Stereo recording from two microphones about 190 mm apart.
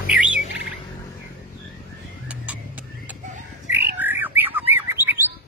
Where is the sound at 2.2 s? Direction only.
10° right (ahead or behind).